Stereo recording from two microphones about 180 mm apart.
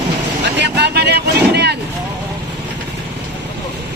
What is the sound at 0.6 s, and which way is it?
Vehicle, 65° right (ahead or behind).